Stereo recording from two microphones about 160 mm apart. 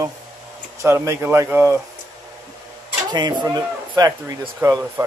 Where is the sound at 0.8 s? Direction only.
15° right (ahead or behind).